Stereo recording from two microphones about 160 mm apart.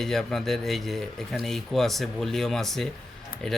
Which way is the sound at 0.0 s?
5° left (ahead or behind).